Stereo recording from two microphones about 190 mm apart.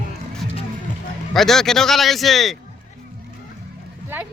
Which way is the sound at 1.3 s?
Centre (ahead or behind).